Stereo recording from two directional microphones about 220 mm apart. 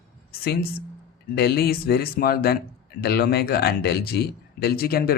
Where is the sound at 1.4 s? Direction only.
45° left (ahead or behind).